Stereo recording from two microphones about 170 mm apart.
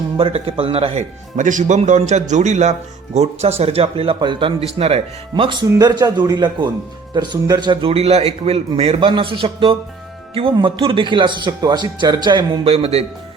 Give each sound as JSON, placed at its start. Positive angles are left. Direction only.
{"t": 0.2, "sound": "a man's voice", "side_deg": -30}
{"t": 5.3, "sound": "a man's voice", "side_deg": -25}